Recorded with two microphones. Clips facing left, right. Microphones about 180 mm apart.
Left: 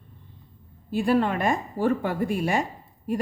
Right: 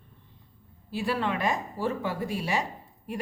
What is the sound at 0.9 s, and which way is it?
Speech, 50° left (ahead or behind).